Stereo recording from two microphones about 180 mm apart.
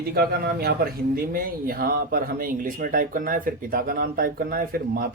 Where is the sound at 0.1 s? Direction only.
60° right (ahead or behind).